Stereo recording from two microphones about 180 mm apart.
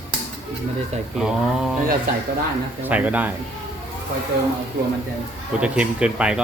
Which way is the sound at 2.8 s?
10° right (ahead or behind).